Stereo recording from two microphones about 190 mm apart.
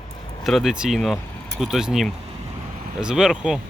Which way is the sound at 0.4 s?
Centre (ahead or behind).